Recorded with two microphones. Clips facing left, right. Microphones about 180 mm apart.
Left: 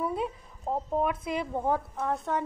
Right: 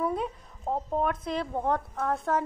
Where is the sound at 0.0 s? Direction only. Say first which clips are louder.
Right 1 dB; 5° left (ahead or behind).